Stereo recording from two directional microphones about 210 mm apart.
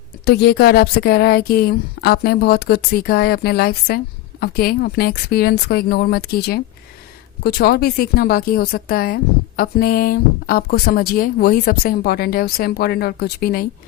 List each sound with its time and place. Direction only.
0.3 s speech: 50° left (ahead or behind)